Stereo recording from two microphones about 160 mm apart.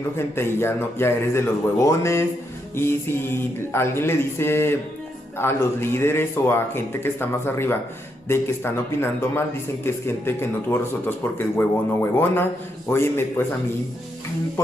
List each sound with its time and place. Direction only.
0.4 s a man's voice: 15° left (ahead or behind)